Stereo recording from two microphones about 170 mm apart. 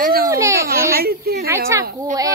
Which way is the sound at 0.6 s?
65° right (ahead or behind).